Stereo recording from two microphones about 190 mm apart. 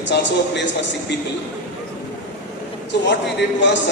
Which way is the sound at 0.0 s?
70° left (ahead or behind).